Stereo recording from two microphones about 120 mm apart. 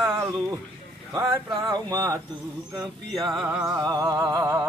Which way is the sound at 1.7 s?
30° right (ahead or behind).